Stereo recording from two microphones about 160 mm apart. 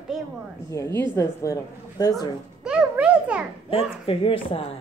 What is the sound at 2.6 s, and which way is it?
Speech, 5° right (ahead or behind).